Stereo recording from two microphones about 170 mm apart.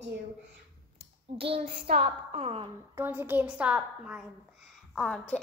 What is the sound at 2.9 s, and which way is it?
A woman's voice, 10° right (ahead or behind).